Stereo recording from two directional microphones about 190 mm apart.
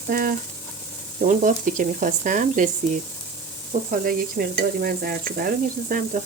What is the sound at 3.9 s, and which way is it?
Speech, 50° right (ahead or behind).